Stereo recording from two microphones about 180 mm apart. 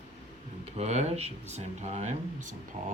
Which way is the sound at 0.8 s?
40° right (ahead or behind).